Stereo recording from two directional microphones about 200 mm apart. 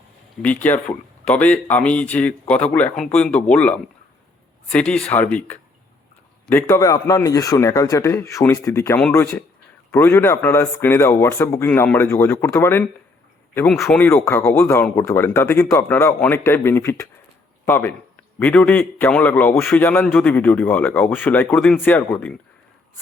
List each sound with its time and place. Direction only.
0.4 s a man's voice: 10° left (ahead or behind)